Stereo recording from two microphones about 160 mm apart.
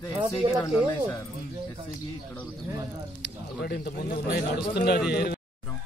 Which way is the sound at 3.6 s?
70° left (ahead or behind).